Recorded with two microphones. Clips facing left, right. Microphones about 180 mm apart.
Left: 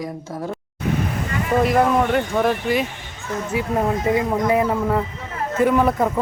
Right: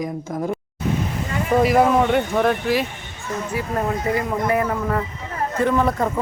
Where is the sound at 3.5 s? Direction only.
20° left (ahead or behind).